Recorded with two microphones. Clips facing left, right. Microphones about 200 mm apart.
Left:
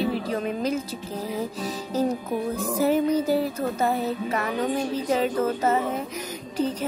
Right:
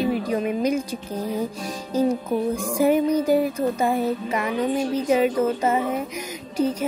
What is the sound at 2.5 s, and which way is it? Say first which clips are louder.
Speech: right 2 dB; 15° right (ahead or behind).